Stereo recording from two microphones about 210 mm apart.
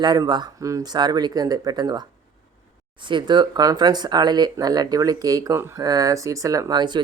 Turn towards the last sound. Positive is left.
turn(degrees=-20)  # may be behind; listen again after turning